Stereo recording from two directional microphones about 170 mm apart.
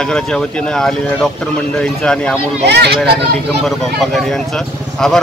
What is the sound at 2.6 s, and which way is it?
Speech, 80° right.